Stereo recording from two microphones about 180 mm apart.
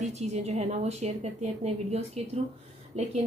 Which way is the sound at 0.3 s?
35° right (ahead or behind).